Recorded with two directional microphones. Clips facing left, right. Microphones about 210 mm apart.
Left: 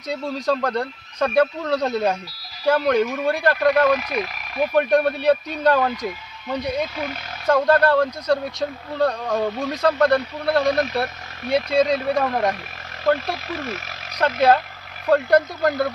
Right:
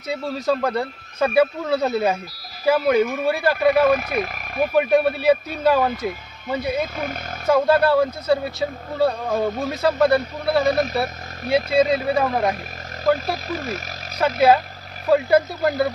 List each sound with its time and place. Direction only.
0.1 s speech: 5° right (ahead or behind)
3.9 s speech: 50° right (ahead or behind)
4.7 s speech: 5° right (ahead or behind)
13.3 s speech: 40° right (ahead or behind)
14.1 s speech: 5° right (ahead or behind)